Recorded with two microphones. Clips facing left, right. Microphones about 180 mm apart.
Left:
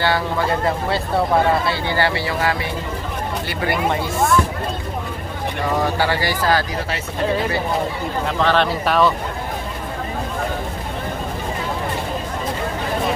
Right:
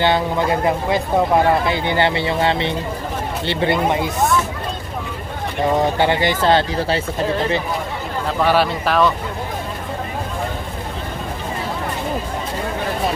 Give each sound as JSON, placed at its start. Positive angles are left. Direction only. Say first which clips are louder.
{"t": 0.0, "sound": "speech", "louder": "right 2 dB", "side_deg": -20}
{"t": 5.6, "sound": "speech", "louder": "right 4 dB", "side_deg": -20}
{"t": 8.3, "sound": "speech", "louder": "right 2 dB", "side_deg": -5}